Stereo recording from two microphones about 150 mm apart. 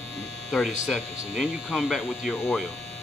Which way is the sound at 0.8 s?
Centre (ahead or behind).